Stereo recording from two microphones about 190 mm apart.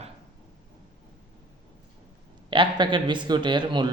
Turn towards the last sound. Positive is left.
turn(degrees=-25)  # may be behind; listen again after turning